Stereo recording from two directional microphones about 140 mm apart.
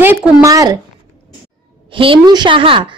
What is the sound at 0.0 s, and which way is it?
Speech, 15° right (ahead or behind).